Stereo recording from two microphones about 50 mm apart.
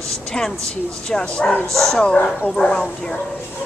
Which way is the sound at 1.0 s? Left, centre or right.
Centre.